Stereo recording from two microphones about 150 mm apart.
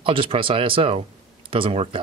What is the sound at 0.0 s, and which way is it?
Speech, 35° right (ahead or behind).